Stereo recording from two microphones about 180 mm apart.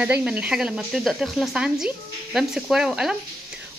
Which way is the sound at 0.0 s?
5° right (ahead or behind).